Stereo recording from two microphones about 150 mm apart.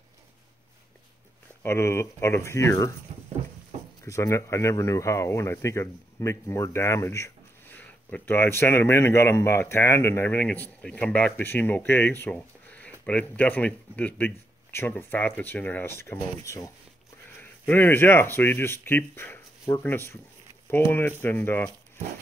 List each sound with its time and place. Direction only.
1.6 s speech: 15° left (ahead or behind)
4.0 s speech: 20° left (ahead or behind)